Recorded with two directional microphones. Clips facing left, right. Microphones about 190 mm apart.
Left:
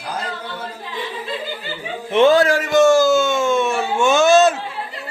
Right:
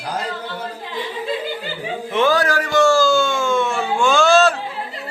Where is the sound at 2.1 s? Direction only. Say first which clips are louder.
Left 5 dB; 25° left (ahead or behind).